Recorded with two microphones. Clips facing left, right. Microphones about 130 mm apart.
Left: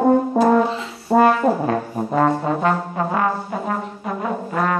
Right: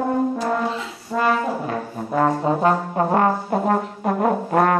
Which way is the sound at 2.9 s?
45° right (ahead or behind).